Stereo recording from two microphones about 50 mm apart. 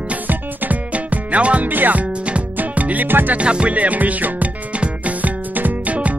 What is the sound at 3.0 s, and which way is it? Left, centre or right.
Music, right.